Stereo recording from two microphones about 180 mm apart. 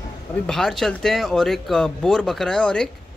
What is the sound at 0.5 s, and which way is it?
Speech, centre (ahead or behind).